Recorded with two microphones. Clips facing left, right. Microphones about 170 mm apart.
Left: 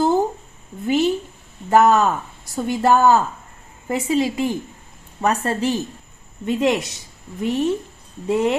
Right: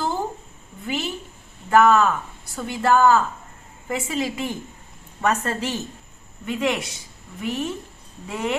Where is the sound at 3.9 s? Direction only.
35° left (ahead or behind).